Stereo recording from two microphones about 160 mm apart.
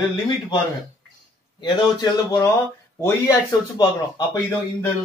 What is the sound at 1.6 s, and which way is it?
Speech, 25° left (ahead or behind).